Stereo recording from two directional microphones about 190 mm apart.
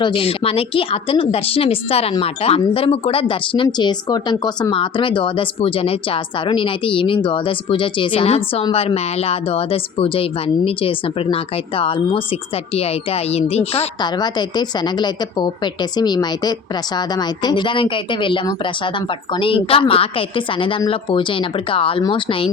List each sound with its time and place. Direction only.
0.0 s speech: 30° left (ahead or behind)
13.7 s speech: 20° left (ahead or behind)